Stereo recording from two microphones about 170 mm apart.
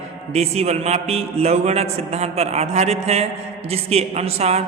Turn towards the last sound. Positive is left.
turn(degrees=-40)  # may be behind; listen again after turning